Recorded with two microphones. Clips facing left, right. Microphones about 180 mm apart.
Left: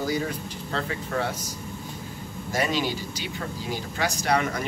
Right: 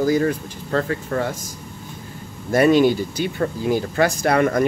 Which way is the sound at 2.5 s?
55° right (ahead or behind).